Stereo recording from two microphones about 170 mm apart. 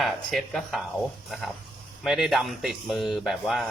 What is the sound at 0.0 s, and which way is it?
Speech, centre (ahead or behind).